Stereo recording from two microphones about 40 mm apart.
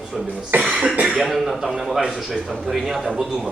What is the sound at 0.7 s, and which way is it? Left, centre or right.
Cough, right.